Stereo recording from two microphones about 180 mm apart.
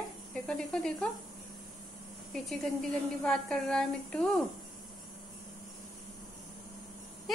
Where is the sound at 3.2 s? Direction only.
5° left (ahead or behind).